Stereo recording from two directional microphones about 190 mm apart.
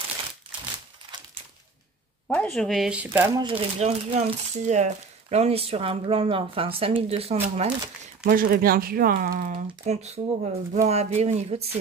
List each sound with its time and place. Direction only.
2.2 s speech: 5° left (ahead or behind); by 3.4 s 10° right (ahead or behind)
3.4 s speech: 30° right (ahead or behind)
8.2 s speech: 50° right (ahead or behind); by 11.8 s 30° right (ahead or behind)